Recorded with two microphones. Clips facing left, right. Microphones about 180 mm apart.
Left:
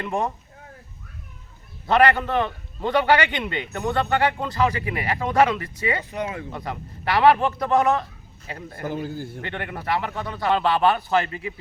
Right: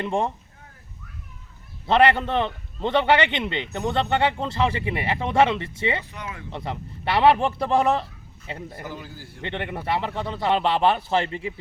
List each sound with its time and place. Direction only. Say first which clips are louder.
0.0 s a man's voice: right 1 dB; 25° right (ahead or behind)
1.9 s a man's voice: even; 25° right (ahead or behind)
6.0 s speech: left 7 dB; 40° left (ahead or behind)
6.5 s a man's voice: even; 25° right (ahead or behind)
8.8 s a man's voice: left 8 dB; 50° left (ahead or behind)
9.4 s a man's voice: right 1 dB; 25° right (ahead or behind)